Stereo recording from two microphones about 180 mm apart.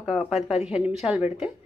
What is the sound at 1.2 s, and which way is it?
Speech, 40° left (ahead or behind).